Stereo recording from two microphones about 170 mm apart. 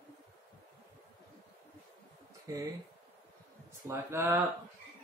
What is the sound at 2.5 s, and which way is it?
Speech, 20° right (ahead or behind).